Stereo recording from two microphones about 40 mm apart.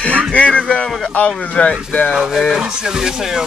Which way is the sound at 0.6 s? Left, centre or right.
Left.